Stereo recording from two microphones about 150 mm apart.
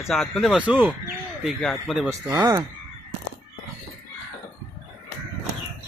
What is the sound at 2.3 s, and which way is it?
Speech, 25° right (ahead or behind).